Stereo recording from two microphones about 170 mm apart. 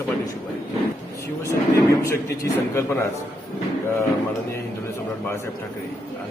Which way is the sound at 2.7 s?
15° left (ahead or behind).